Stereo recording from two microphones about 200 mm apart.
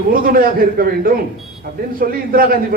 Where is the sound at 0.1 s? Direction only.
45° right (ahead or behind).